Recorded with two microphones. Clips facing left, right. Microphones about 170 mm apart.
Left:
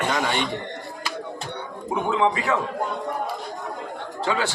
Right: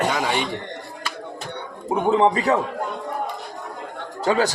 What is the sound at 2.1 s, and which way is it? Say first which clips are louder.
Speech: right 5 dB; 35° right (ahead or behind).